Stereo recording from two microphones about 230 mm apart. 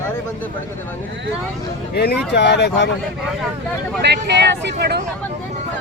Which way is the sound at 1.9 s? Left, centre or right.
Left.